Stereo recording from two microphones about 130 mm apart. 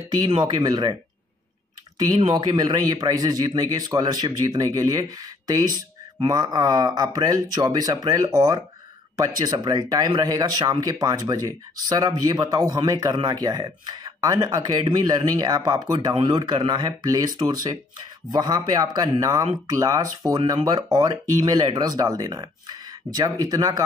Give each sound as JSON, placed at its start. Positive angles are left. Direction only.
{"t": 0.4, "sound": "speech", "side_deg": -30}
{"t": 2.0, "sound": "speech", "side_deg": -35}